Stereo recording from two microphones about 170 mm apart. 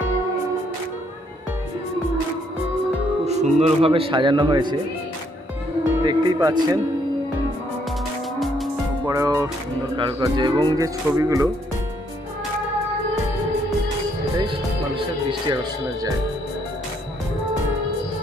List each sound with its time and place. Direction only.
3.3 s speech: 40° right (ahead or behind)
6.0 s music: 25° right (ahead or behind)
9.0 s speech: 20° right (ahead or behind)